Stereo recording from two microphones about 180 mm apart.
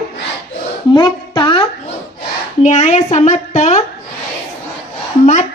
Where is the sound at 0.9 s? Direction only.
25° left (ahead or behind).